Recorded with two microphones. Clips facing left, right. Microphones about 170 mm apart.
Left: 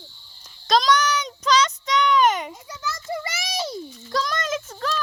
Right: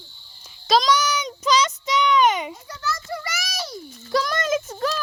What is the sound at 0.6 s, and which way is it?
Child singing, 5° right (ahead or behind).